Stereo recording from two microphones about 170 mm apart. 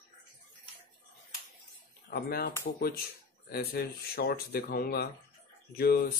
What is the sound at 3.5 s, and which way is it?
Speech, 65° left (ahead or behind).